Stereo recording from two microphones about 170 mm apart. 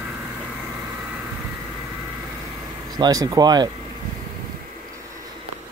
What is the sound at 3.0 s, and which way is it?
Speech, 20° right (ahead or behind).